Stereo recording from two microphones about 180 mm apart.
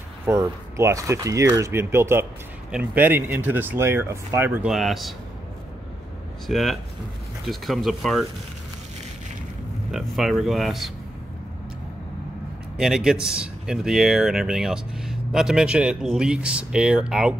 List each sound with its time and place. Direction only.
0.3 s speech: 15° right (ahead or behind); by 5.1 s centre (ahead or behind)
6.4 s speech: centre (ahead or behind)
9.8 s speech: centre (ahead or behind)
12.7 s speech: centre (ahead or behind)